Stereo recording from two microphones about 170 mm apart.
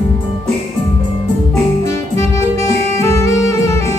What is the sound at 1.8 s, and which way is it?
Saxophone, 15° left (ahead or behind).